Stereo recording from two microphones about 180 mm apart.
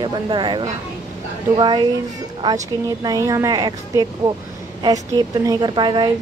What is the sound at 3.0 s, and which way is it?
Speech, 20° right (ahead or behind).